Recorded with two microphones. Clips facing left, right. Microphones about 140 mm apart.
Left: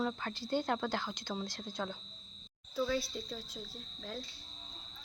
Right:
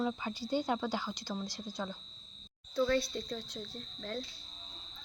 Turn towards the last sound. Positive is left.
turn(degrees=0)  # may be behind; listen again after turning